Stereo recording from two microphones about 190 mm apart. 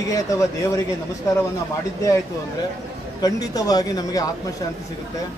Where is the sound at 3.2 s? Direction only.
20° left (ahead or behind).